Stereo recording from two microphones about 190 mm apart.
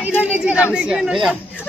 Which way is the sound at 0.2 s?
5° right (ahead or behind).